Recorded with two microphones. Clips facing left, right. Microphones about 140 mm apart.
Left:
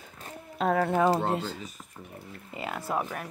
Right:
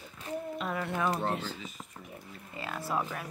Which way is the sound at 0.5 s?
75° left (ahead or behind).